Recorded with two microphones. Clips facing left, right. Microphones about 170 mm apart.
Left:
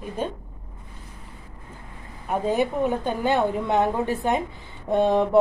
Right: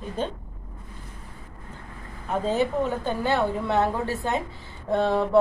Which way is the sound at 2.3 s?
15° left (ahead or behind).